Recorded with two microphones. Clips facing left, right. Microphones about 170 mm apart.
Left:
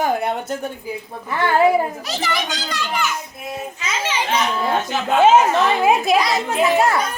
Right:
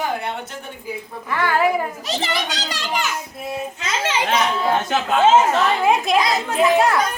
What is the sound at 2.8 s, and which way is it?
Speech, 40° right (ahead or behind).